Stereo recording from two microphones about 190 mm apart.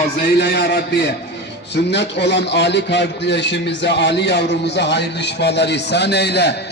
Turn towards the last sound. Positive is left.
turn(degrees=60)  # may be behind; listen again after turning